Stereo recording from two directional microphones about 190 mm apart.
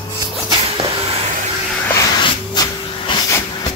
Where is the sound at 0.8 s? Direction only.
30° right (ahead or behind).